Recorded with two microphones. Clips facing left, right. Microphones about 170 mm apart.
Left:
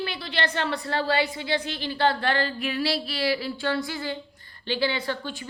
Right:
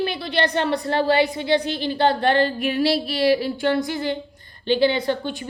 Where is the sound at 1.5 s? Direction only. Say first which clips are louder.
Right 7 dB; 15° right (ahead or behind).